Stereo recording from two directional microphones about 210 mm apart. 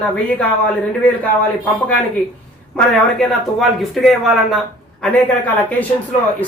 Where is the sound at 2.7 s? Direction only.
Centre (ahead or behind).